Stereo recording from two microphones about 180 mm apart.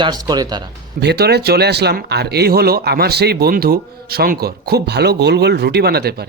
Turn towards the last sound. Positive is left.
turn(degrees=-60)  # may be behind; listen again after turning